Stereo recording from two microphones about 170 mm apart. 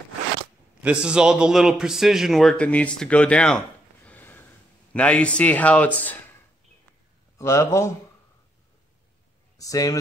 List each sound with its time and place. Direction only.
0.8 s a man's voice: 5° right (ahead or behind)
3.0 s a sound: 5° left (ahead or behind)
4.9 s speech: 5° left (ahead or behind)
7.3 s speech: 15° left (ahead or behind)
9.6 s speech: 20° left (ahead or behind)